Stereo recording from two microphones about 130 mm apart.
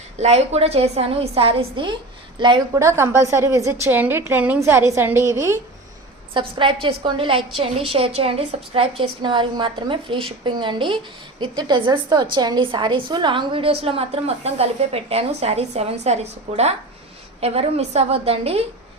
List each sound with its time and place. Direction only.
0.2 s a woman's voice: 55° right (ahead or behind); by 2.6 s 35° right (ahead or behind)
2.7 s a woman's voice: 20° right (ahead or behind)
6.3 s a woman's voice: 40° right (ahead or behind)
17.4 s a woman's voice: 50° right (ahead or behind)